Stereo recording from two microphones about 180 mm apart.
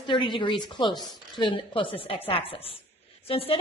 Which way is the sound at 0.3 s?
25° left (ahead or behind).